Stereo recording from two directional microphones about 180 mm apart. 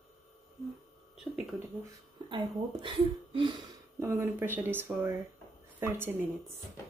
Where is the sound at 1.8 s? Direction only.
25° right (ahead or behind).